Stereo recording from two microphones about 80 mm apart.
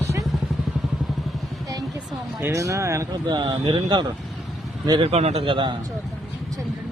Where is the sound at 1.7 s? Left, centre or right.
Right.